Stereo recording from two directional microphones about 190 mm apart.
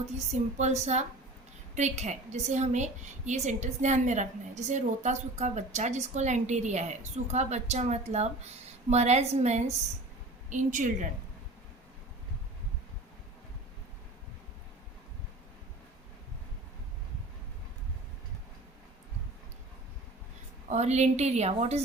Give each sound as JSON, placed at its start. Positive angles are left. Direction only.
{"t": 0.6, "sound": "a woman's voice", "side_deg": -35}
{"t": 20.7, "sound": "a woman's voice", "side_deg": -35}